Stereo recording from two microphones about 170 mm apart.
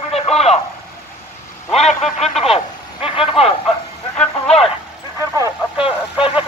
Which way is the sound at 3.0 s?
35° left (ahead or behind).